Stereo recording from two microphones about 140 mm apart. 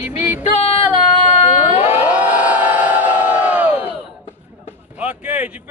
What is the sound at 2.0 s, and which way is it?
Crowd, 10° right (ahead or behind).